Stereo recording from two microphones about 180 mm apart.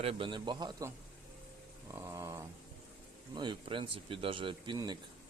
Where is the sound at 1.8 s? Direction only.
15° right (ahead or behind).